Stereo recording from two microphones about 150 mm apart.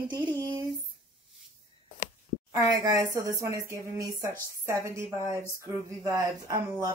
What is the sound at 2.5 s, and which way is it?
Speech, 25° right (ahead or behind).